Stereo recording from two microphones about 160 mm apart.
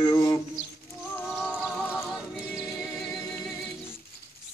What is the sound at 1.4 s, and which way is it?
Music, 10° left (ahead or behind).